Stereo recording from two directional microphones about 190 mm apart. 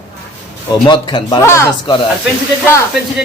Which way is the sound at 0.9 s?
20° left (ahead or behind).